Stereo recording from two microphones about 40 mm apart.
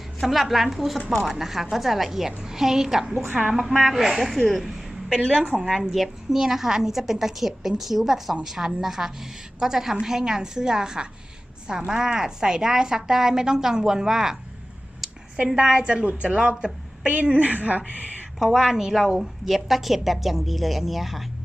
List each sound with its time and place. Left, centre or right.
0.2 s a woman's voice: centre
4.6 s a sound: centre
5.5 s a woman's voice: centre
15.5 s a woman's voice: right
18.3 s a woman's voice: centre